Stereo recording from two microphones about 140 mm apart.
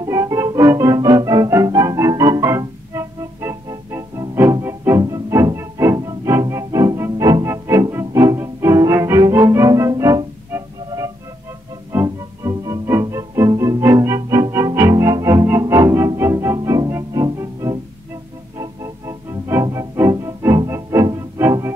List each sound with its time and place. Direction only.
0.0 s organ: 25° right (ahead or behind)
7.4 s music: 20° right (ahead or behind)